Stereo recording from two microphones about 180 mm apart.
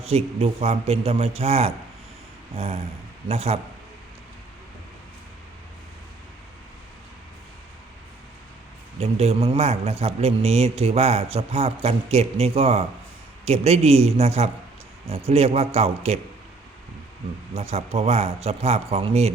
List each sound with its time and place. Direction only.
0.0 s speech: 35° right (ahead or behind)
9.0 s speech: 35° right (ahead or behind)
17.5 s speech: 35° right (ahead or behind)